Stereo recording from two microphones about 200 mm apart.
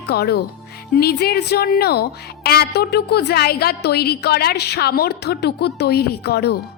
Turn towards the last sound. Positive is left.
turn(degrees=55)  # may be behind; listen again after turning